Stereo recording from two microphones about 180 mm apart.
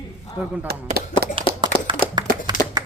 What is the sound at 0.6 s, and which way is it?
Speech, 60° right (ahead or behind).